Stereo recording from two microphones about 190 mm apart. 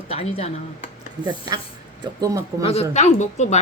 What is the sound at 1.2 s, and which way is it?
Speech, 25° right (ahead or behind).